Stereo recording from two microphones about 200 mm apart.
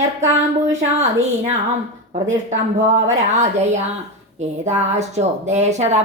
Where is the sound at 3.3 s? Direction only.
35° right (ahead or behind).